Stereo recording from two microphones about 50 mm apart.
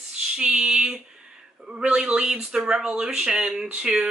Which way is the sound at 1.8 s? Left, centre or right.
Centre.